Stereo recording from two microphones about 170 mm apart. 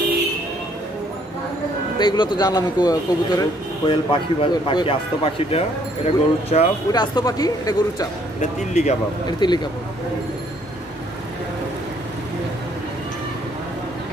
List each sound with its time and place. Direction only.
2.0 s a man's voice: 25° left (ahead or behind)
6.9 s a man's voice: 25° left (ahead or behind)
8.4 s a man's voice: 40° left (ahead or behind)
9.4 s a man's voice: 25° left (ahead or behind)